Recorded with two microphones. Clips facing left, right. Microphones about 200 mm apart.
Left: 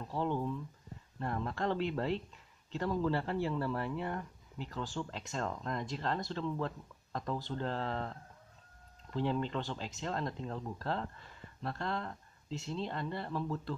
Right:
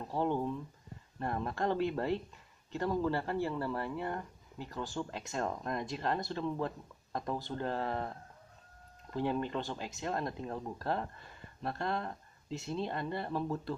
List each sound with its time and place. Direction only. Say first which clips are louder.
0.0 s speech: right 2 dB; 15° right (ahead or behind)